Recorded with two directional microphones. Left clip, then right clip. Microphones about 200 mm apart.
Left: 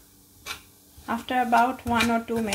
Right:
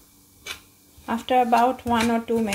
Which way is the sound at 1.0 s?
15° right (ahead or behind).